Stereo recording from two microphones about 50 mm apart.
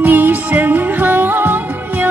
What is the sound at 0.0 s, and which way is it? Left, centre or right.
Music, right.